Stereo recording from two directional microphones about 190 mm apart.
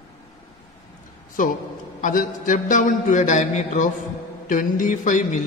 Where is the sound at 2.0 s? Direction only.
45° left (ahead or behind).